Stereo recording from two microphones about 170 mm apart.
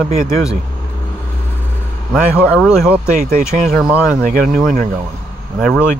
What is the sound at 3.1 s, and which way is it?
Speech, 55° right (ahead or behind).